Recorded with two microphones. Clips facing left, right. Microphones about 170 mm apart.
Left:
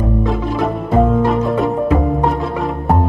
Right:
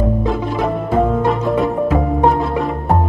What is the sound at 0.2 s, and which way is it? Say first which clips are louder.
Music: left 1 dB; centre (ahead or behind).